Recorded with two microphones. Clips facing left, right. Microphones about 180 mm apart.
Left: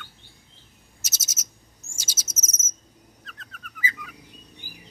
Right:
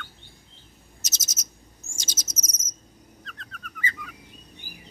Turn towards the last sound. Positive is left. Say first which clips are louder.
# left 1 dB
turn(degrees=0)  # may be behind; listen again after turning